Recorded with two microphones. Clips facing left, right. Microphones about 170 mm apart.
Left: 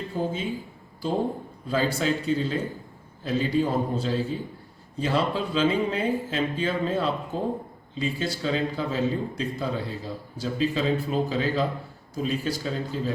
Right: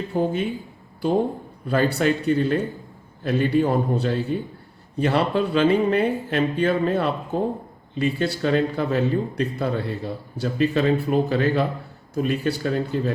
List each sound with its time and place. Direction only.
0.2 s speech: 65° right (ahead or behind)
1.6 s speech: 65° right (ahead or behind)